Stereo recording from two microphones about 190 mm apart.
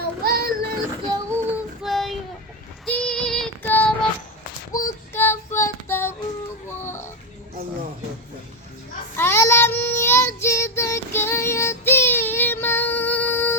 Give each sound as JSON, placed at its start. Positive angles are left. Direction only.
{"t": 0.2, "sound": "child singing", "side_deg": -55}
{"t": 1.1, "sound": "child singing", "side_deg": -15}
{"t": 1.8, "sound": "child singing", "side_deg": 0}
{"t": 6.7, "sound": "children playing", "side_deg": 15}
{"t": 9.1, "sound": "child singing", "side_deg": 15}